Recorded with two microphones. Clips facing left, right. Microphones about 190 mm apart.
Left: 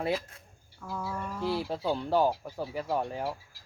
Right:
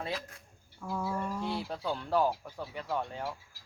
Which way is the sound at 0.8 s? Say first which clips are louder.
Right 2 dB; 10° right (ahead or behind).